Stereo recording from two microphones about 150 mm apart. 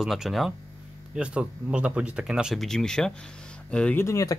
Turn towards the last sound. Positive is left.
turn(degrees=20)  # may be behind; listen again after turning